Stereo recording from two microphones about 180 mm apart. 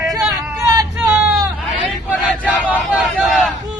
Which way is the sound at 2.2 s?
5° right (ahead or behind).